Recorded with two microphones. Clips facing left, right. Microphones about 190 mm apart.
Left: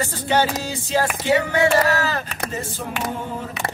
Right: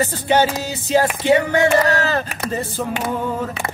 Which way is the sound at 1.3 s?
20° right (ahead or behind).